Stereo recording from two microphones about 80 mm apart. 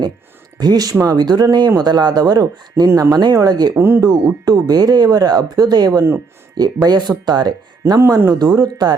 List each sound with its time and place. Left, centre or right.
0.6 s speech: right
3.8 s speech: right
4.0 s speech: right
7.9 s speech: right
8.3 s speech: right